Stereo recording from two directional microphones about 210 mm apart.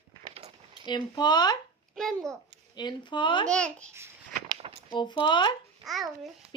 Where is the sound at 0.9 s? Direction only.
20° left (ahead or behind).